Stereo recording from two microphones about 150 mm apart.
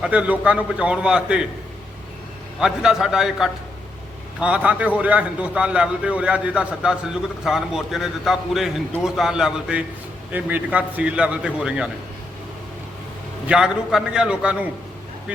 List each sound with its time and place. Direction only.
0.0 s a man's voice: 10° right (ahead or behind)
2.6 s a man's voice: 5° right (ahead or behind)
13.5 s a man's voice: 5° right (ahead or behind)